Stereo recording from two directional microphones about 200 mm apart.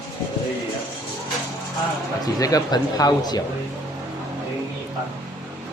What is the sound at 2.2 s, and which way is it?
Speech, 20° left (ahead or behind).